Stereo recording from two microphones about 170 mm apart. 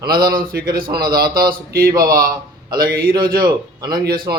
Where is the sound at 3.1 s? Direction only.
25° right (ahead or behind).